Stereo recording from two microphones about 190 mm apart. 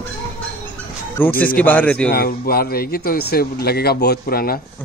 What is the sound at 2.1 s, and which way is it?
Speech, 50° left (ahead or behind).